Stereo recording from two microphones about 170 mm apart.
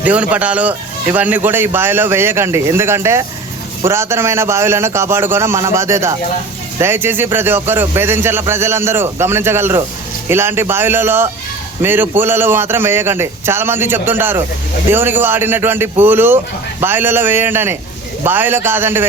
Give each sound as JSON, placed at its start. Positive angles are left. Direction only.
{"t": 0.0, "sound": "a man's voice", "side_deg": -10}